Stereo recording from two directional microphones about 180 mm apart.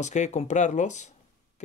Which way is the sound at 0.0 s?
40° left (ahead or behind).